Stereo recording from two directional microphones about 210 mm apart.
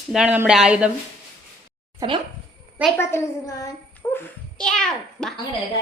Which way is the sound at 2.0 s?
20° right (ahead or behind).